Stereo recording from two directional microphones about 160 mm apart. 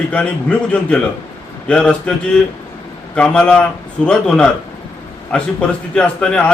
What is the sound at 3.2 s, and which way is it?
A man's voice, 5° left (ahead or behind).